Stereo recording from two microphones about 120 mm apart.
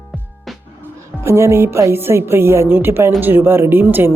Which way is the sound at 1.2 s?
20° right (ahead or behind).